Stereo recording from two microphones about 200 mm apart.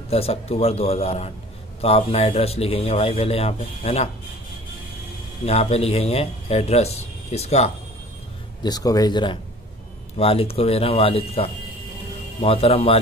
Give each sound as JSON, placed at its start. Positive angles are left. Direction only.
{"t": 0.1, "sound": "speech", "side_deg": 30}
{"t": 5.4, "sound": "speech", "side_deg": 30}
{"t": 8.6, "sound": "speech", "side_deg": 20}